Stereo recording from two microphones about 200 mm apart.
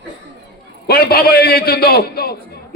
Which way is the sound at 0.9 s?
50° left (ahead or behind).